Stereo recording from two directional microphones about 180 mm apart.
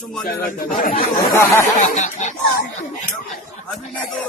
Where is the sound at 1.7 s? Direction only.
45° left (ahead or behind).